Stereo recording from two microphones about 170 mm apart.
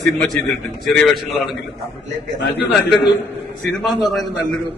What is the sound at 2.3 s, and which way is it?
Speech, 90° left.